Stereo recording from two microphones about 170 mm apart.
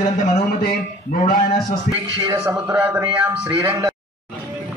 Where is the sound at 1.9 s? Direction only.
15° right (ahead or behind).